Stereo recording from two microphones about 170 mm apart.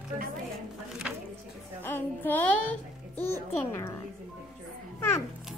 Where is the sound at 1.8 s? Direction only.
10° left (ahead or behind).